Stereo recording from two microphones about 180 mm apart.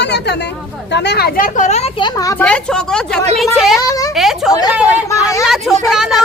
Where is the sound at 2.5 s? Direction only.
5° left (ahead or behind).